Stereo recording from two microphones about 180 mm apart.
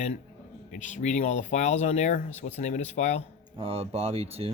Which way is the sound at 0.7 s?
40° left (ahead or behind).